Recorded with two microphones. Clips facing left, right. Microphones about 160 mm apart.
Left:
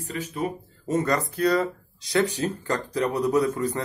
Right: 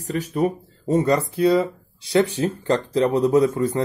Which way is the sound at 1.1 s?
25° right (ahead or behind).